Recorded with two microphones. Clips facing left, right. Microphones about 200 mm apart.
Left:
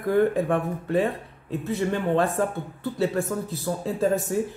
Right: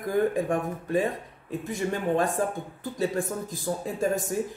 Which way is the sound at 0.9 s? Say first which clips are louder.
Left 2 dB; 15° right (ahead or behind).